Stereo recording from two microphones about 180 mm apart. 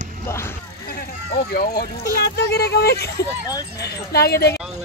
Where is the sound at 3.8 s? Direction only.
60° left (ahead or behind).